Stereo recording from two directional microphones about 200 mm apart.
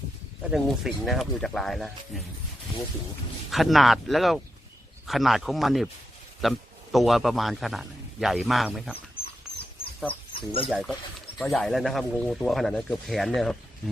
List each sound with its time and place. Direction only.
0.5 s speech: centre (ahead or behind)
3.5 s speech: centre (ahead or behind)
9.2 s dog: 30° left (ahead or behind)
10.3 s speech: 30° left (ahead or behind)
10.7 s speech: centre (ahead or behind)